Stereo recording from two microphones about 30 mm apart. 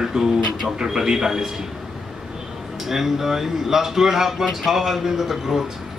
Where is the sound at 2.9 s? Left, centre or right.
Centre.